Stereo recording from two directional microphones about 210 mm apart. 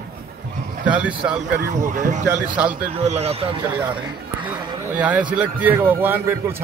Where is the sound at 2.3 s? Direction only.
5° right (ahead or behind).